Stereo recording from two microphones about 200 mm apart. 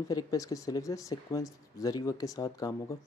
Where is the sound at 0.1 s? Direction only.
15° left (ahead or behind).